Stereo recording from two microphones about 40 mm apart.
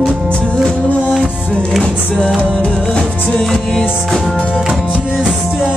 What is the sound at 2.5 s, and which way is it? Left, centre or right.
Music, left.